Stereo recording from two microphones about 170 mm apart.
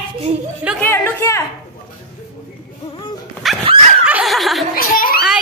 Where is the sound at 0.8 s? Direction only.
10° left (ahead or behind).